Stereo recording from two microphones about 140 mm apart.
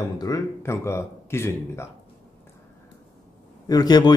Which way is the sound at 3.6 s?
30° left (ahead or behind).